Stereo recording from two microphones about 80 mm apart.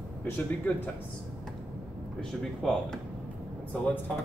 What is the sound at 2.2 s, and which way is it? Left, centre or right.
Speech, centre.